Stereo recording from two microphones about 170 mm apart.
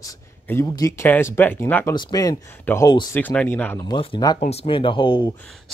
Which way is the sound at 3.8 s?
30° left (ahead or behind).